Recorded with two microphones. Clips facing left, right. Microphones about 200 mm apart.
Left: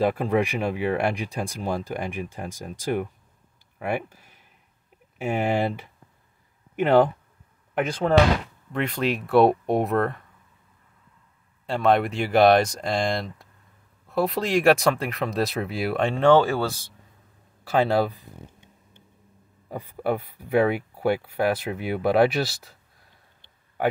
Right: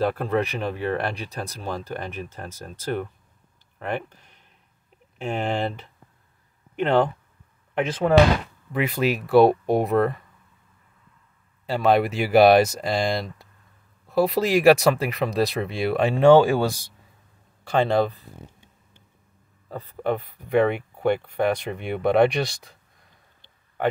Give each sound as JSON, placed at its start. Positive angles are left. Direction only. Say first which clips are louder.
{"t": 0.0, "sound": "speech", "louder": "left 1 dB", "side_deg": 10}
{"t": 11.6, "sound": "speech", "louder": "right 1 dB", "side_deg": 0}
{"t": 17.6, "sound": "speech", "louder": "right 1 dB", "side_deg": 5}
{"t": 19.7, "sound": "speech", "louder": "even", "side_deg": 10}
{"t": 23.8, "sound": "speech", "louder": "even", "side_deg": 10}